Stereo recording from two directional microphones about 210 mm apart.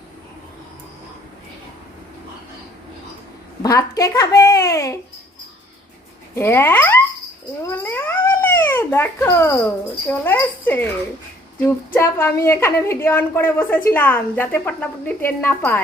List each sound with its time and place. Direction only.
3.6 s a woman's voice: 15° left (ahead or behind)
6.3 s a woman's voice: 10° left (ahead or behind)
11.9 s a woman's voice: 10° left (ahead or behind)